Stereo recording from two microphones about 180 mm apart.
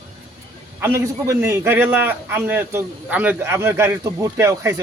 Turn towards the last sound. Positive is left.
turn(degrees=-15)  # may be behind; listen again after turning